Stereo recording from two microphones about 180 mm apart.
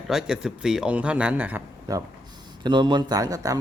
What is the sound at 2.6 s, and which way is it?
Speech, 25° right (ahead or behind).